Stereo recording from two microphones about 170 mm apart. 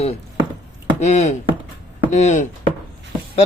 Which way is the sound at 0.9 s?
40° left (ahead or behind).